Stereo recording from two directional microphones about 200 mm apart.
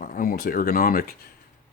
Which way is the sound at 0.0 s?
45° left (ahead or behind).